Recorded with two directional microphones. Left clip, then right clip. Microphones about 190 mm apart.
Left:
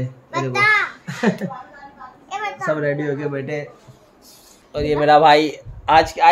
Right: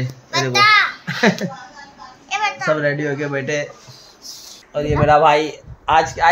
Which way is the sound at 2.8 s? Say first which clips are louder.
Right 2 dB; 40° right (ahead or behind).